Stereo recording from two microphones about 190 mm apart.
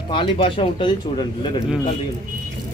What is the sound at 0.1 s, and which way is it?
Speech, 25° left (ahead or behind).